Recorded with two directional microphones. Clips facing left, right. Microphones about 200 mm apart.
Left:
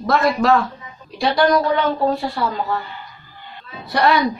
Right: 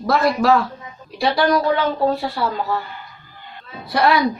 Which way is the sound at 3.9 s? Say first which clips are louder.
Even; centre (ahead or behind).